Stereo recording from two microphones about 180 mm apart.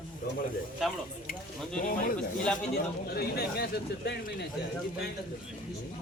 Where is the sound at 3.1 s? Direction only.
60° left (ahead or behind).